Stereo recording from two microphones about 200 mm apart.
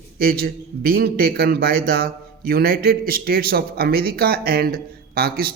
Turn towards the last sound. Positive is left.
turn(degrees=-50)  # may be behind; listen again after turning